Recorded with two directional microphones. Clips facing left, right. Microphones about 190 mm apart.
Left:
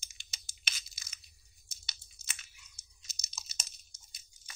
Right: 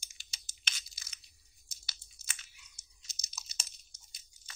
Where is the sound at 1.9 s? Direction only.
20° left (ahead or behind).